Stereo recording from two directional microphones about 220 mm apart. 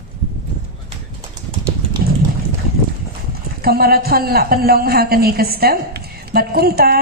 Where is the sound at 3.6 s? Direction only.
45° right (ahead or behind).